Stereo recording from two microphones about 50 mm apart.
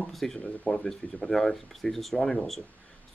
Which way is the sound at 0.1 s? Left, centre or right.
Centre.